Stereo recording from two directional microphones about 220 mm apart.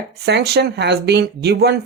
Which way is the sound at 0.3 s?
50° right (ahead or behind).